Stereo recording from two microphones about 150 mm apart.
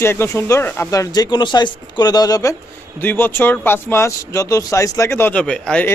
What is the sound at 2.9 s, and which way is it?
Speech, 15° left (ahead or behind).